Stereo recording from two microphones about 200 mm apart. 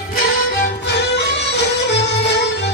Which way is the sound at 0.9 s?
60° left (ahead or behind).